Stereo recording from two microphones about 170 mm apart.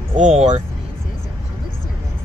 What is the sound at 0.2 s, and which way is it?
Speech, 45° right (ahead or behind).